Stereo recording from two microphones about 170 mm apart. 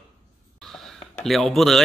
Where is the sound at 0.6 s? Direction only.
Centre (ahead or behind).